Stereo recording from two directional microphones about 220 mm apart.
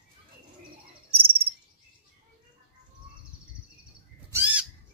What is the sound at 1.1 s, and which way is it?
Cricket, 25° right (ahead or behind).